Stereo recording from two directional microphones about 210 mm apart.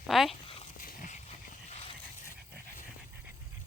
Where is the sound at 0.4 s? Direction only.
25° left (ahead or behind).